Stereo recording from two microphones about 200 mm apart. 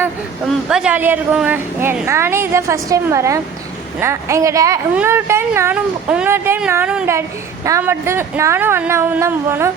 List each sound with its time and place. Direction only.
0.4 s a woman's voice: 5° right (ahead or behind)